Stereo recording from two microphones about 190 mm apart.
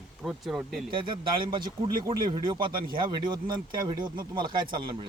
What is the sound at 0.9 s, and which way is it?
Speech, 25° right (ahead or behind).